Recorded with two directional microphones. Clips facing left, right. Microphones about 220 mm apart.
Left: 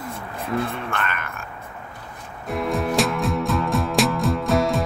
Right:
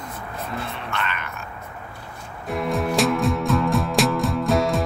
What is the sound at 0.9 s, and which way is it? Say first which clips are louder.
Speech: left 1 dB; 50° left (ahead or behind).